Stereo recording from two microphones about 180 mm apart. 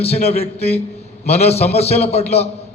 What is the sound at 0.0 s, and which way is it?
A man's voice, 35° left (ahead or behind).